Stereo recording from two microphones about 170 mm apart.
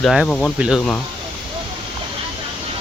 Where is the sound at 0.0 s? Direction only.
Centre (ahead or behind).